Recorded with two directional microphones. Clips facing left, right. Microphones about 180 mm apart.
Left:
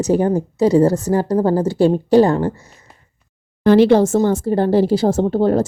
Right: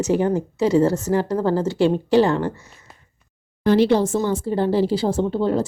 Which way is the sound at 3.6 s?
90° left.